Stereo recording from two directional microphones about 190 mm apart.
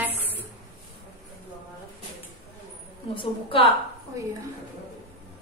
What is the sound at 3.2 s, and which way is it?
Speech, 30° left (ahead or behind).